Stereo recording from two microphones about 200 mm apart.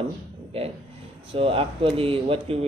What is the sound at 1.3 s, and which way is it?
Speech, 25° right (ahead or behind).